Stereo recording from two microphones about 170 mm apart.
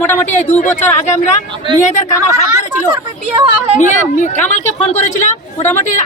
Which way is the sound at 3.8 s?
45° left (ahead or behind).